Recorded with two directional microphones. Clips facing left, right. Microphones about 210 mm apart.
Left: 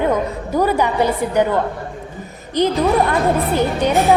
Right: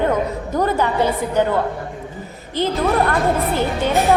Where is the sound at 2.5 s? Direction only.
15° left (ahead or behind).